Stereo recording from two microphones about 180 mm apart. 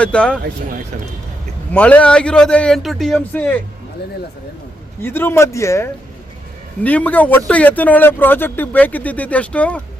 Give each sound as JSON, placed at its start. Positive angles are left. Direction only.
{"t": 0.0, "sound": "speech", "side_deg": 5}
{"t": 1.7, "sound": "a man's voice", "side_deg": 5}
{"t": 5.0, "sound": "speech", "side_deg": 10}